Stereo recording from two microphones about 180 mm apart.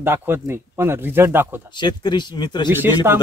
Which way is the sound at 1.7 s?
25° left (ahead or behind).